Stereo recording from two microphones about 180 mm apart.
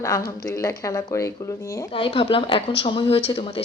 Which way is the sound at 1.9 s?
30° left (ahead or behind).